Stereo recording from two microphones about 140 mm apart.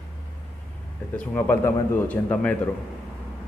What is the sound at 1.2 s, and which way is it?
A man's voice, 15° left (ahead or behind).